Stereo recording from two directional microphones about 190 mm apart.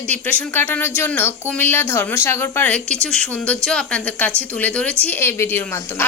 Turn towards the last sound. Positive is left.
turn(degrees=10)  # may be behind; listen again after turning